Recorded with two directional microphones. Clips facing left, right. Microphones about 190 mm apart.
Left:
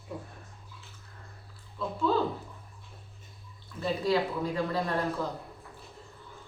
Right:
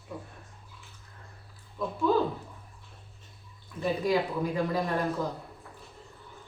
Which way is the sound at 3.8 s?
15° right (ahead or behind).